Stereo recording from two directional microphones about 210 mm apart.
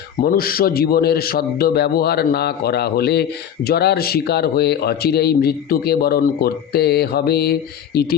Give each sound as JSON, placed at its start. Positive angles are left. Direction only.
{"t": 0.2, "sound": "a man's voice", "side_deg": 45}